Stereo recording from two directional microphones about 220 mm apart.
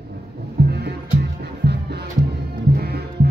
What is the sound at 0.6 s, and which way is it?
Music, 50° right (ahead or behind).